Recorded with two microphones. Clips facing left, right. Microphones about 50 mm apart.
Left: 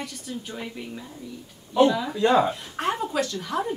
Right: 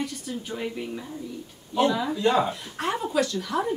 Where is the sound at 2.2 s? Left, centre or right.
Left.